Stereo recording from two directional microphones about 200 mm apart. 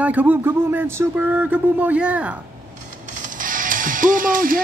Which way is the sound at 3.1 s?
40° right (ahead or behind).